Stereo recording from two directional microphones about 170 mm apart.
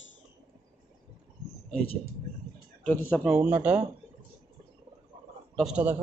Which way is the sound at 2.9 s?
10° left (ahead or behind).